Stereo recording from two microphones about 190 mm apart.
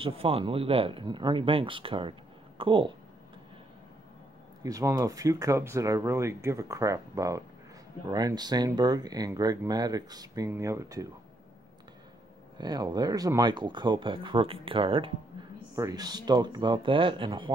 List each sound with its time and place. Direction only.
0.0 s speech: 30° right (ahead or behind)
4.6 s speech: 15° right (ahead or behind)
12.5 s speech: 20° right (ahead or behind)